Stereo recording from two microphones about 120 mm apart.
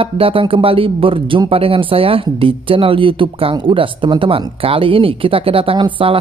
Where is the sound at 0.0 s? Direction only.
50° right (ahead or behind).